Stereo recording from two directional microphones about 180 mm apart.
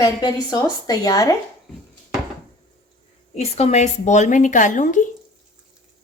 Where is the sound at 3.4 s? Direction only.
35° left (ahead or behind).